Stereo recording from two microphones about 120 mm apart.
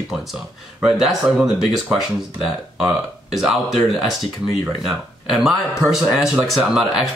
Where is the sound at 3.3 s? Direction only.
Centre (ahead or behind).